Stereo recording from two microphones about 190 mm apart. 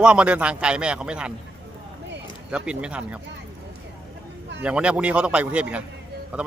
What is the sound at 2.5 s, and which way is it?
Speech, 5° right (ahead or behind).